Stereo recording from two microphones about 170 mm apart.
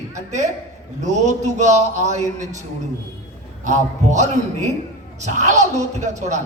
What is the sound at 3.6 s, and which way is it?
A man's voice, 45° right (ahead or behind).